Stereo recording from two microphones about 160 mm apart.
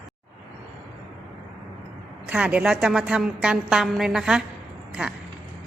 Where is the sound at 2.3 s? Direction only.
5° right (ahead or behind).